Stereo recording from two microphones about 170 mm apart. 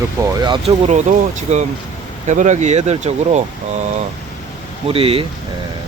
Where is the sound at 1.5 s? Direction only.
40° right (ahead or behind).